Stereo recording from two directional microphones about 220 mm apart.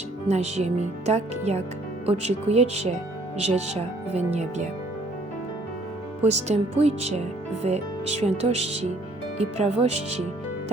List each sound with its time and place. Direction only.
0.3 s speech: 30° right (ahead or behind)
4.3 s music: 30° right (ahead or behind)
6.2 s music: 30° right (ahead or behind)
7.6 s speech: 30° right (ahead or behind)